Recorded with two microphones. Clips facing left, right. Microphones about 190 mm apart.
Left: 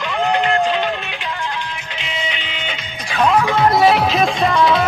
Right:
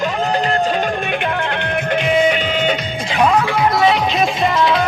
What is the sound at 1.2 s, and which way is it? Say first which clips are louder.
Music: right 6 dB; 60° right (ahead or behind).